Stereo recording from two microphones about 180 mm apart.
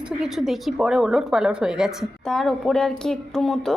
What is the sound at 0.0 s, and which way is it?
A woman's voice, 5° right (ahead or behind).